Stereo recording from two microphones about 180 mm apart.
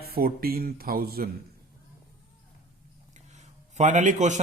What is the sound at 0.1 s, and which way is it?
Speech, 55° right (ahead or behind).